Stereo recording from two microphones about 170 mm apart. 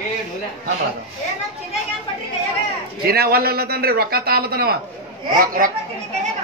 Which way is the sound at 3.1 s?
65° right (ahead or behind).